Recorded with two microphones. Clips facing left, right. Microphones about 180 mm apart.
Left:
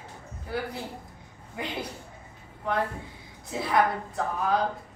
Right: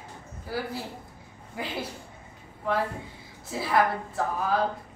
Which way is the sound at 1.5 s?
5° right (ahead or behind).